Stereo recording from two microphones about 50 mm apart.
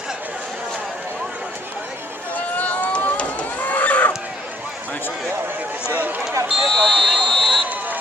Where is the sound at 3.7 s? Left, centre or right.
Left.